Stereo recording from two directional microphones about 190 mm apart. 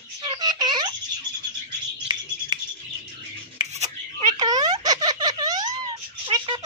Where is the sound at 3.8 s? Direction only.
25° right (ahead or behind).